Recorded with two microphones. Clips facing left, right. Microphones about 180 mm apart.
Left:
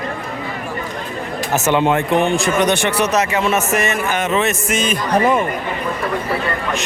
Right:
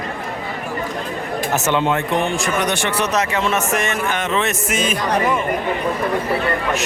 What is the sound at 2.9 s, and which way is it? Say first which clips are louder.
A man's voice: left 3 dB; 10° left (ahead or behind).